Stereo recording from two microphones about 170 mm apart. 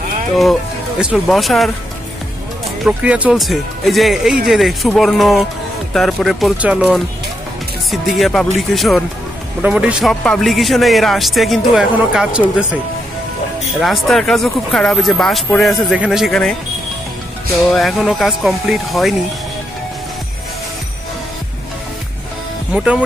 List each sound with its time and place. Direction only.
0.4 s speech: centre (ahead or behind)
2.8 s speech: 5° right (ahead or behind)
7.9 s speech: centre (ahead or behind)
13.7 s speech: centre (ahead or behind)
17.6 s speech: centre (ahead or behind)
22.7 s speech: 5° right (ahead or behind)